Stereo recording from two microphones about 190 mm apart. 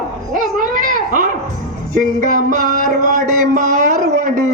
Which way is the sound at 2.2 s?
40° right (ahead or behind).